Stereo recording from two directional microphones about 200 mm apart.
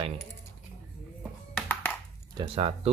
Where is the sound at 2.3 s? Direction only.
30° right (ahead or behind).